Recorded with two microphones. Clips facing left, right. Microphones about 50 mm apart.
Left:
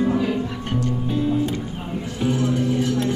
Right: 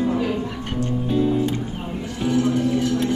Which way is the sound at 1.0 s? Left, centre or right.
Centre.